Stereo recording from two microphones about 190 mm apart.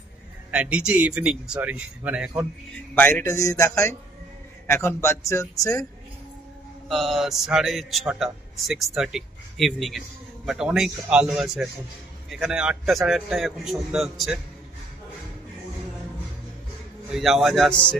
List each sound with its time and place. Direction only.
0.5 s speech: 5° right (ahead or behind)
2.9 s a man's voice: 10° left (ahead or behind)
6.9 s a man's voice: centre (ahead or behind)
17.1 s a man's voice: centre (ahead or behind)